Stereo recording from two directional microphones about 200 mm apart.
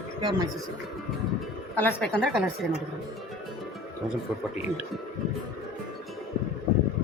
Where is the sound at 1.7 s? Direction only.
10° left (ahead or behind).